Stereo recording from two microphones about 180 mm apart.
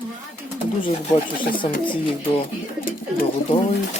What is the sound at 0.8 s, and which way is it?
Speech, 30° left (ahead or behind).